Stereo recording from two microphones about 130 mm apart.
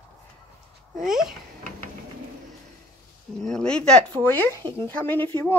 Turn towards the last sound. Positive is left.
turn(degrees=15)  # may be behind; listen again after turning